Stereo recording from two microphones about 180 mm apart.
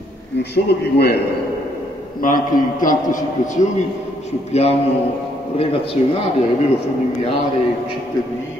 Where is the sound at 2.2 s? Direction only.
50° left (ahead or behind); by 5.9 s 30° left (ahead or behind).